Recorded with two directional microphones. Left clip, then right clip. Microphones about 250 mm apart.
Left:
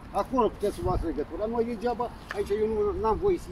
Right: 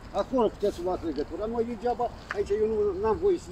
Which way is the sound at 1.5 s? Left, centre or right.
Centre.